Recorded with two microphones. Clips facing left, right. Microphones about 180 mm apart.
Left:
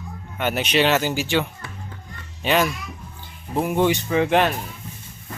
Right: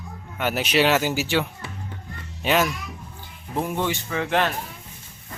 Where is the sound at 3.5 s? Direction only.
15° left (ahead or behind).